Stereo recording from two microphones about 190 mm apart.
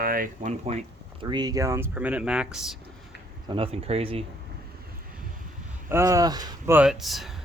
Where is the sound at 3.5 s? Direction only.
30° right (ahead or behind).